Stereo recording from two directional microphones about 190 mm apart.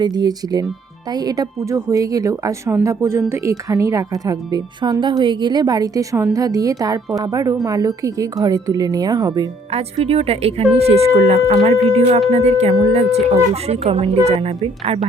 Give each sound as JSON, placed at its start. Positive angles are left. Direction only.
{"t": 0.0, "sound": "speech", "side_deg": -20}
{"t": 9.7, "sound": "speech", "side_deg": -30}